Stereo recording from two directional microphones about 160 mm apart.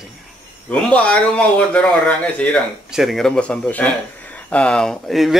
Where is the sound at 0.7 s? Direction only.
10° left (ahead or behind).